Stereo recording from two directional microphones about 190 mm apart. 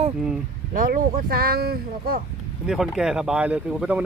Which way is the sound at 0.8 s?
50° right (ahead or behind).